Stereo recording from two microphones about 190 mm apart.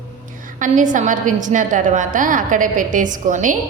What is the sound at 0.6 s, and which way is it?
A woman's voice, 45° right (ahead or behind).